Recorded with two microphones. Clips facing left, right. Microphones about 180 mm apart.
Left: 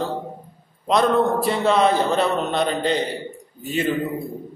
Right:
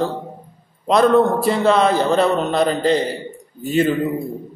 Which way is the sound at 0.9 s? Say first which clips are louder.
Right 4 dB; centre (ahead or behind).